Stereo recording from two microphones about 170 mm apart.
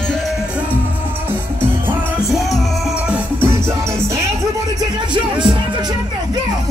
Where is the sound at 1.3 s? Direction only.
15° right (ahead or behind).